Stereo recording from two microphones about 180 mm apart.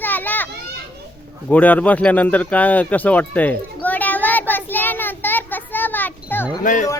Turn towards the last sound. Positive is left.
turn(degrees=45)  # may be behind; listen again after turning